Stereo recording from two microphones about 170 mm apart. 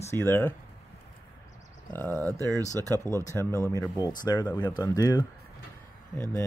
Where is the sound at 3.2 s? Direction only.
15° left (ahead or behind).